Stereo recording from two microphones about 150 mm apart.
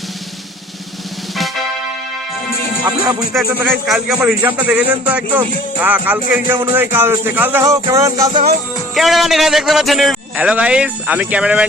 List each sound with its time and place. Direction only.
2.8 s music: 25° right (ahead or behind)
3.3 s a man's voice: centre (ahead or behind)
7.6 s music: 20° right (ahead or behind)
9.0 s a man's voice: centre (ahead or behind)